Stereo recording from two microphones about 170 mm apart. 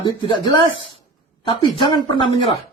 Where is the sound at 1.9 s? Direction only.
30° left (ahead or behind).